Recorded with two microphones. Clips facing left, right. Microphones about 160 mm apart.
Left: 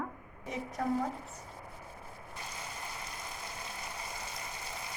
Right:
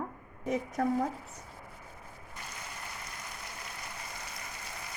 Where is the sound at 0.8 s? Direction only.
50° right (ahead or behind).